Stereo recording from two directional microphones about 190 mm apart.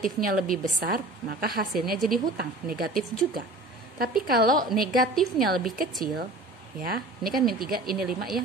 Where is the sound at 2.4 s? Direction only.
55° right (ahead or behind).